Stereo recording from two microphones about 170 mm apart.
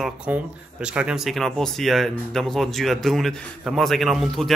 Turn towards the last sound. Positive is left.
turn(degrees=0)  # may be behind; listen again after turning